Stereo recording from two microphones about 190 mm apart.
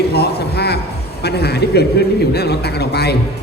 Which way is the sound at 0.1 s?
60° left (ahead or behind).